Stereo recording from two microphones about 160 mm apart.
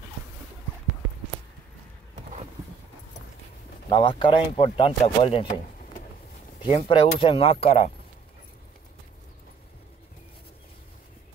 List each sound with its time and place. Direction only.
3.9 s speech: 30° left (ahead or behind)
6.6 s speech: 30° left (ahead or behind)